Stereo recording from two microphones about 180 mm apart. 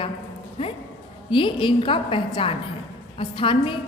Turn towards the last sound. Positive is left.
turn(degrees=30)  # may be behind; listen again after turning